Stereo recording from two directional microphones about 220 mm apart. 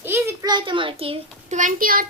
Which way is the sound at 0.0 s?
10° right (ahead or behind).